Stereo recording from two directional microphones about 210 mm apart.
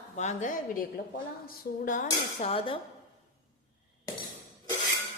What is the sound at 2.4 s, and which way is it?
Cutlery, 25° left (ahead or behind).